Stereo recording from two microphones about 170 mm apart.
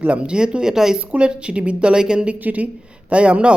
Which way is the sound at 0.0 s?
5° right (ahead or behind).